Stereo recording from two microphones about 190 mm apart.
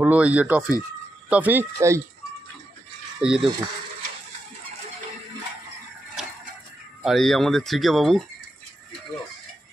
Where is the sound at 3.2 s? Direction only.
5° right (ahead or behind).